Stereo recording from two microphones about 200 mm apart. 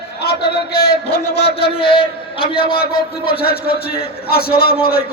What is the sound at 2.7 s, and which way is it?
A man's voice, 50° left (ahead or behind).